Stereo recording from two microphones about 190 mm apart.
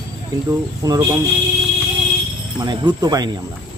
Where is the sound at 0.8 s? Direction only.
20° right (ahead or behind).